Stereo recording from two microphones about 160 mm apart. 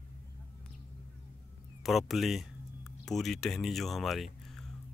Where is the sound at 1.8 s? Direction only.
Centre (ahead or behind).